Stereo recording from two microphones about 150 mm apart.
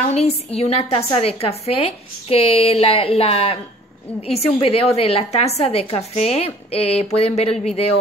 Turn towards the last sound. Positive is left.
turn(degrees=45)  # may be behind; listen again after turning